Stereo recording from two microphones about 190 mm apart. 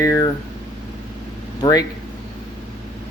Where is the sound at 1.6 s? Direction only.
20° left (ahead or behind).